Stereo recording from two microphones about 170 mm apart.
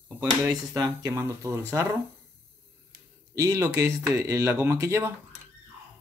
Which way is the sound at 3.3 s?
20° right (ahead or behind).